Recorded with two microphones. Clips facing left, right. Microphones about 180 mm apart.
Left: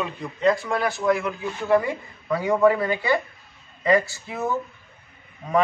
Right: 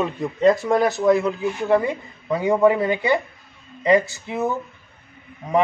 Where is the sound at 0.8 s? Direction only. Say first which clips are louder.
Right 4 dB; 25° right (ahead or behind).